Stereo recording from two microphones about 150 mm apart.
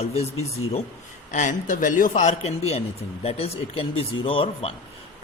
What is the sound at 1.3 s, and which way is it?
Speech, 55° left (ahead or behind).